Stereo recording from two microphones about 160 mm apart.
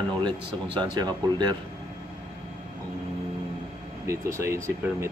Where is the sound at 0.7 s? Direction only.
25° right (ahead or behind).